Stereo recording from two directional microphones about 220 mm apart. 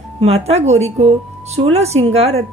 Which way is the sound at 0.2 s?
30° right (ahead or behind).